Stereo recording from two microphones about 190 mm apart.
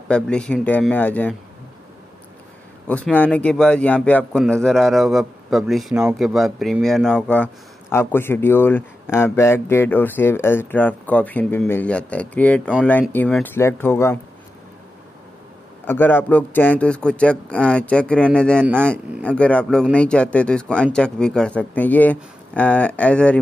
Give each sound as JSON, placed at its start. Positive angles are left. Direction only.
{"t": 0.1, "sound": "a man's voice", "side_deg": 5}
{"t": 2.9, "sound": "a man's voice", "side_deg": 5}
{"t": 15.9, "sound": "a man's voice", "side_deg": 10}